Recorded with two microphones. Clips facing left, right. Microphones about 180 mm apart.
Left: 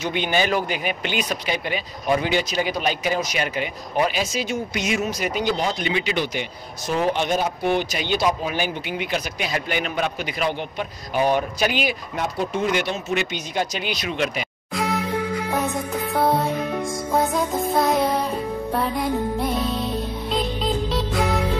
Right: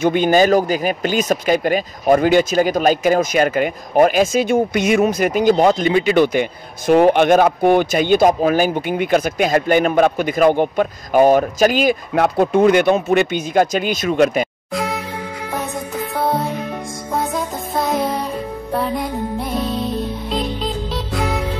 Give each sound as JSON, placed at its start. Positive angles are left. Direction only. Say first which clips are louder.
{"t": 0.0, "sound": "speech", "louder": "right 9 dB", "side_deg": -45}
{"t": 12.2, "sound": "speech", "louder": "right 11 dB", "side_deg": -60}
{"t": 14.7, "sound": "music", "louder": "right 2 dB", "side_deg": 0}
{"t": 16.0, "sound": "music", "louder": "right 1 dB", "side_deg": 0}